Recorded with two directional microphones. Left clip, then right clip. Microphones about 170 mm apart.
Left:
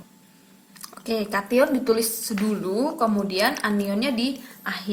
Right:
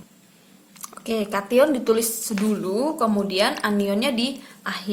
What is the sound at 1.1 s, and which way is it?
Speech, 15° right (ahead or behind).